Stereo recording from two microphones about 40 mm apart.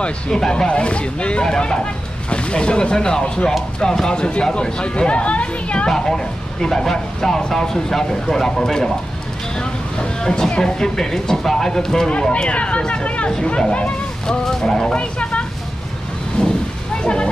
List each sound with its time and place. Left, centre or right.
0.4 s speech: centre
0.7 s speech: left
5.9 s speech: centre
9.6 s a sound: centre
10.6 s speech: centre
12.1 s speech: left
14.2 s speech: centre
15.0 s a sound: left